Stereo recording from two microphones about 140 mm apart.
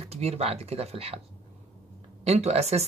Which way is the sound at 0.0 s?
50° right (ahead or behind).